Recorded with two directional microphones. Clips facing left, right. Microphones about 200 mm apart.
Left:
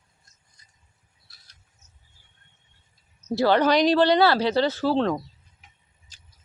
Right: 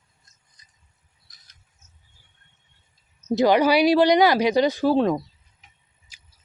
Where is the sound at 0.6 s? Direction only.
20° right (ahead or behind).